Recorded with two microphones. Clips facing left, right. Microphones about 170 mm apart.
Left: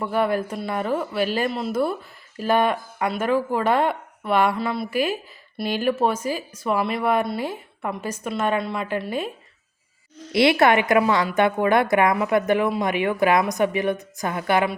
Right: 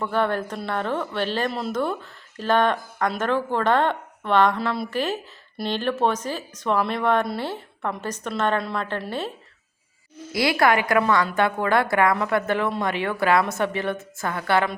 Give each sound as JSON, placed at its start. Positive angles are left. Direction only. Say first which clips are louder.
{"t": 0.0, "sound": "speech", "louder": "left 1 dB", "side_deg": 10}
{"t": 10.3, "sound": "a woman's voice", "louder": "left 3 dB", "side_deg": 25}